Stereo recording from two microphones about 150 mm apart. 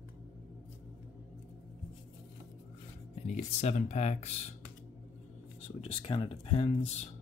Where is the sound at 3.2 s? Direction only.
50° left (ahead or behind).